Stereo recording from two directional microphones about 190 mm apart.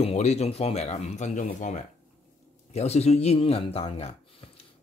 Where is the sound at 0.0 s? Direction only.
35° left (ahead or behind).